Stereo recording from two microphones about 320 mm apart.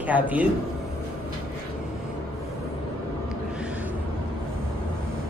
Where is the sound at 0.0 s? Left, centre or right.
Centre.